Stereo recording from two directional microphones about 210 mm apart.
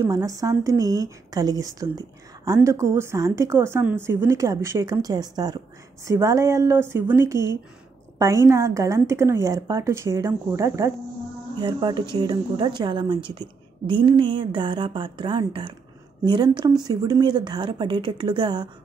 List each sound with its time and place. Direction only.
0.0 s a woman's voice: 15° right (ahead or behind)